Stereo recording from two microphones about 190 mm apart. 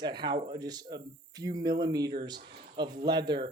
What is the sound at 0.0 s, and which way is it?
Speech, 25° right (ahead or behind).